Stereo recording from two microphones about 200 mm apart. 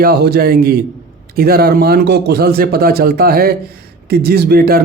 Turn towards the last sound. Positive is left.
turn(degrees=-50)  # may be behind; listen again after turning